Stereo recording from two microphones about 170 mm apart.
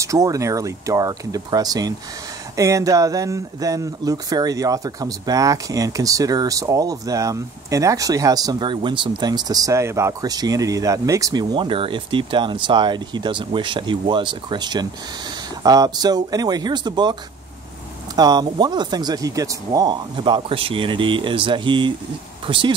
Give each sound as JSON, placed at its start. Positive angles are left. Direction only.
{"t": 0.0, "sound": "speech", "side_deg": -20}